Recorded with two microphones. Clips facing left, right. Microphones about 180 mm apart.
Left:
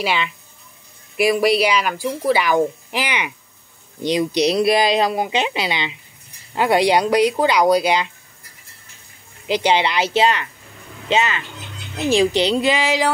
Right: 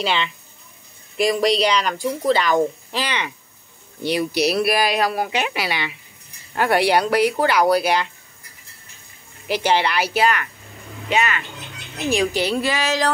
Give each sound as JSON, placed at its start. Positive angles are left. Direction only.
{"t": 0.0, "sound": "speech", "side_deg": 5}
{"t": 9.5, "sound": "speech", "side_deg": 15}